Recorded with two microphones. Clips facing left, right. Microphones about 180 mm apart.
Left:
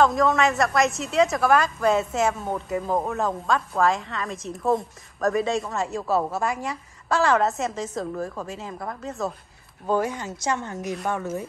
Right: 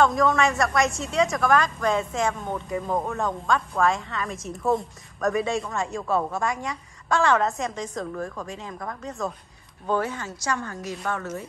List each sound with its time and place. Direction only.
0.0 s a woman's voice: centre (ahead or behind)